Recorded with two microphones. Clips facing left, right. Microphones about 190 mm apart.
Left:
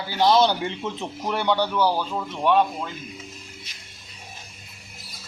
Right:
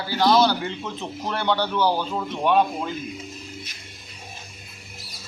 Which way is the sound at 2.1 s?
5° right (ahead or behind).